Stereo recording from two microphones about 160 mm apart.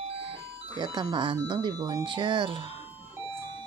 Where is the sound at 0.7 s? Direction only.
25° right (ahead or behind).